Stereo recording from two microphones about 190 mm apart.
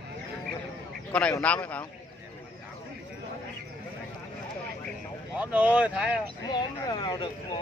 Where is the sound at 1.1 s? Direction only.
5° left (ahead or behind).